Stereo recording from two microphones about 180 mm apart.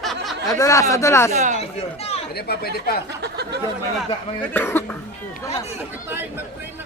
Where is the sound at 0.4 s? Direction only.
20° left (ahead or behind).